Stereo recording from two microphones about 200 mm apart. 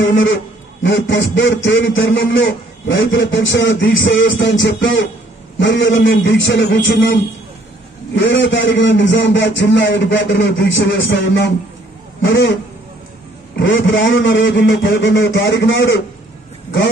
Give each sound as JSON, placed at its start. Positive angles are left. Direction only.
{"t": 0.0, "sound": "a man's voice", "side_deg": 70}
{"t": 8.2, "sound": "a man's voice", "side_deg": 65}
{"t": 13.6, "sound": "a man's voice", "side_deg": 65}